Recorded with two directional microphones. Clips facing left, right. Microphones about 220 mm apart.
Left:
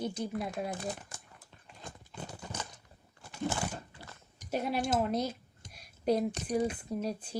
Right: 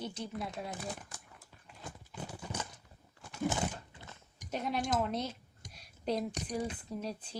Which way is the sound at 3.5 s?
20° right (ahead or behind).